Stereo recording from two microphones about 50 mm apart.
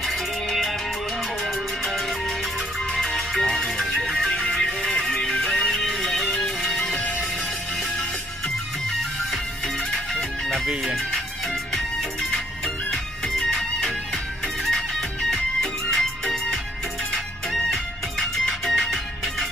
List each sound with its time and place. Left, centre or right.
0.0 s music: centre
9.3 s music: centre